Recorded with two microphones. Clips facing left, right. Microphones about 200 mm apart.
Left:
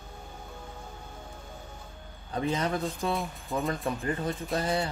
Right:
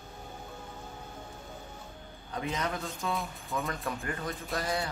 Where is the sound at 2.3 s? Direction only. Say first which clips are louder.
Left 5 dB; 30° left (ahead or behind).